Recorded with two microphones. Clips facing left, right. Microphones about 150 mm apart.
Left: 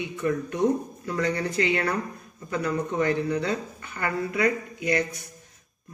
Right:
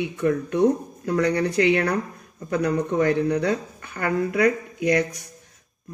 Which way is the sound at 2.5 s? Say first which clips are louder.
Right 5 dB; 45° right (ahead or behind).